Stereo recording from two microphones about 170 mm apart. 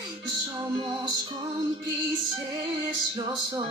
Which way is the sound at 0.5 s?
20° right (ahead or behind).